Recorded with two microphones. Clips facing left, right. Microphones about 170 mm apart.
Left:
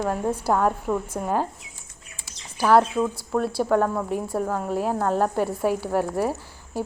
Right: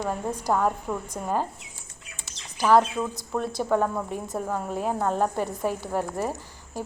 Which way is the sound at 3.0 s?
10° left (ahead or behind).